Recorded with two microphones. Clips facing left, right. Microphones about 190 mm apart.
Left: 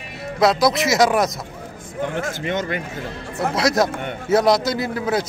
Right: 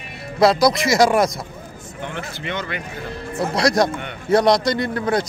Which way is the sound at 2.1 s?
45° left (ahead or behind).